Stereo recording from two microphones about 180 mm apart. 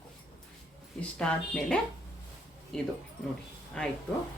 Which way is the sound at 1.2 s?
5° left (ahead or behind).